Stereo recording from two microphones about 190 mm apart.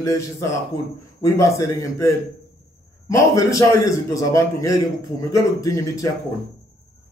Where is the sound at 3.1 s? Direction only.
15° left (ahead or behind).